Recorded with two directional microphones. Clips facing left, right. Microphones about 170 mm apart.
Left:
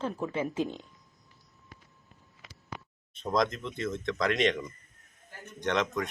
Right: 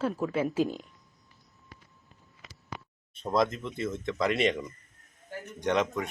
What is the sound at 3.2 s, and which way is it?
Speech, 5° right (ahead or behind).